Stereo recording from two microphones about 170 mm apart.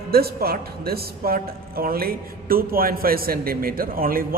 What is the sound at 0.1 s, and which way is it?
A woman's voice, 65° right (ahead or behind).